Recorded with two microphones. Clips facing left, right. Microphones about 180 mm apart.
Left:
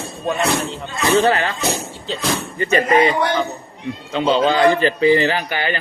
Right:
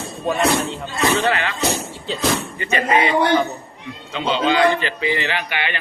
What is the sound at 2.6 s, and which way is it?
Speech, 40° left (ahead or behind).